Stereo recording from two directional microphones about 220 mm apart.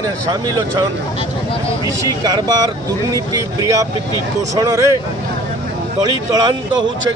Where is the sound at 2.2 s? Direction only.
15° right (ahead or behind).